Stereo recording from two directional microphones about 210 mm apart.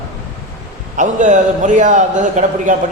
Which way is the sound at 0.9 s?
35° right (ahead or behind).